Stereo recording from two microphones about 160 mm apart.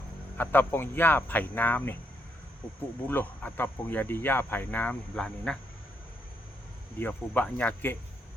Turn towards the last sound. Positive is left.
turn(degrees=10)  # may be behind; listen again after turning